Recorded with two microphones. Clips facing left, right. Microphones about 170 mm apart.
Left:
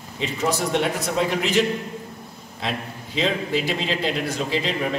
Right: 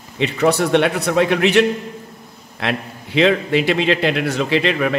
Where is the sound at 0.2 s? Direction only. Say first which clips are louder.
Right 7 dB; 70° right (ahead or behind).